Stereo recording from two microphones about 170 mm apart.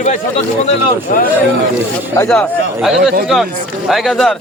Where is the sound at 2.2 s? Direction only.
Centre (ahead or behind).